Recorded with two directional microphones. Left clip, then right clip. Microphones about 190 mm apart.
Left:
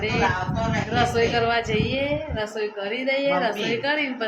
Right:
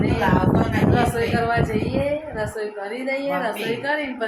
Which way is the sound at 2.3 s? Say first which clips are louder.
Even; 5° left (ahead or behind).